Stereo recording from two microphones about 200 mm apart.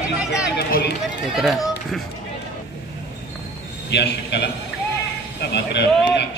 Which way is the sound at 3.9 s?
55° left (ahead or behind).